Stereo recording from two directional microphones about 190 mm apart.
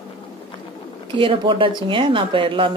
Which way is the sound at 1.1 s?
25° right (ahead or behind).